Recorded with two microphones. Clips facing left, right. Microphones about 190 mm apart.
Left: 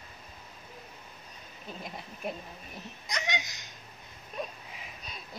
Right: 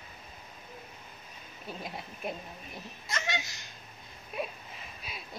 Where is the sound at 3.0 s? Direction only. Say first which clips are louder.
Even; 15° left (ahead or behind).